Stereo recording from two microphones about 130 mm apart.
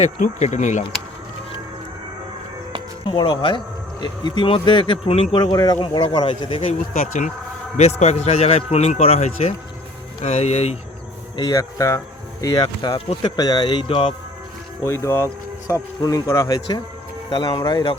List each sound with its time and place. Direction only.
0.0 s speech: 60° left (ahead or behind)
3.1 s speech: 40° left (ahead or behind)
5.4 s a man's voice: 30° left (ahead or behind)
6.9 s speech: 85° left
7.8 s a man's voice: 55° left (ahead or behind)
11.5 s speech: 25° left (ahead or behind); by 14.1 s 45° left (ahead or behind)
14.8 s speech: 20° left (ahead or behind)
17.3 s speech: 35° left (ahead or behind)